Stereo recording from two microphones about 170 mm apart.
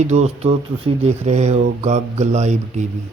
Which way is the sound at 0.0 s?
40° right (ahead or behind).